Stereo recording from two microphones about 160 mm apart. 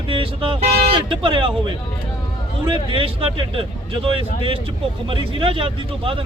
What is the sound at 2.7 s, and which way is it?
Speech, 35° right (ahead or behind).